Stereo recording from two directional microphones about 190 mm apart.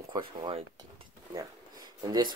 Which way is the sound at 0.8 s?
20° right (ahead or behind).